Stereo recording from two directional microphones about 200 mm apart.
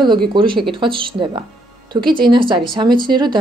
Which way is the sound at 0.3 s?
25° right (ahead or behind).